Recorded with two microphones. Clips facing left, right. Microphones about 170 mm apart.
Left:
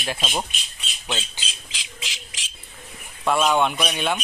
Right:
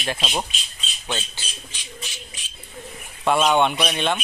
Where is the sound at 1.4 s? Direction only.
90° left.